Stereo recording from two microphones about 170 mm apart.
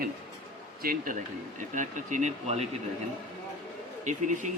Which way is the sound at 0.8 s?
55° right (ahead or behind).